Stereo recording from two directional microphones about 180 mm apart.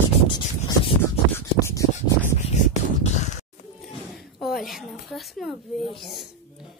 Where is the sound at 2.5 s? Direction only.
40° left (ahead or behind).